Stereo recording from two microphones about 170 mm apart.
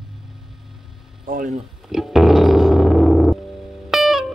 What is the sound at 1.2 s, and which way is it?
Speech, 55° right (ahead or behind).